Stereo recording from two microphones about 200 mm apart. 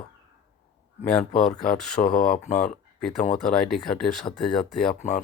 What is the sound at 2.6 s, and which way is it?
Speech, 5° left (ahead or behind).